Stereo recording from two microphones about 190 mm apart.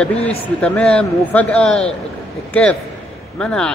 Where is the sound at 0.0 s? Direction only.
5° left (ahead or behind).